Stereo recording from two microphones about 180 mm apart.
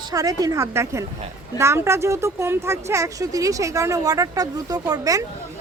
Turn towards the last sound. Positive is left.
turn(degrees=-20)  # may be behind; listen again after turning